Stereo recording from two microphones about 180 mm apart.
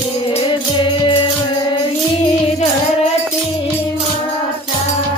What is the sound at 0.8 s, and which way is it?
Music, 25° left (ahead or behind).